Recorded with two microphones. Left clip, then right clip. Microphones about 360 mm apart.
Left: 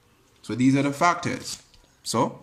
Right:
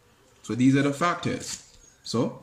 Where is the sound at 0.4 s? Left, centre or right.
Centre.